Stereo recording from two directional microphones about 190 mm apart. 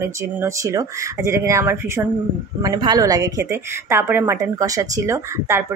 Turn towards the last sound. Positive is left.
turn(degrees=-15)  # may be behind; listen again after turning